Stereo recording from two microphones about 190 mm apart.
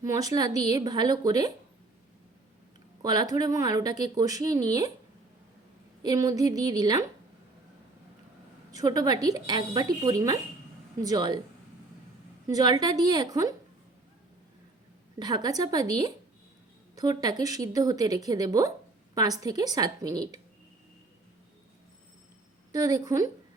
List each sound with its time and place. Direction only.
0.0 s speech: 20° right (ahead or behind)
3.0 s speech: 20° right (ahead or behind)
6.0 s speech: 20° right (ahead or behind)
8.7 s speech: 20° right (ahead or behind)
12.5 s speech: 20° right (ahead or behind)
15.2 s speech: 20° right (ahead or behind)
22.7 s a woman's voice: 20° right (ahead or behind)